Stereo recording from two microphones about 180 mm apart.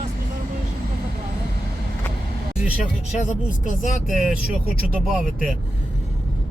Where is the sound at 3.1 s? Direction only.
45° left (ahead or behind).